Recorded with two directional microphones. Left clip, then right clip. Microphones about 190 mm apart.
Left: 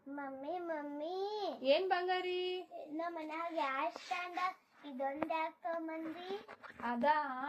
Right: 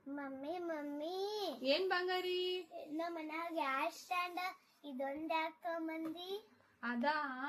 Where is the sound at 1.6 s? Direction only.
30° right (ahead or behind).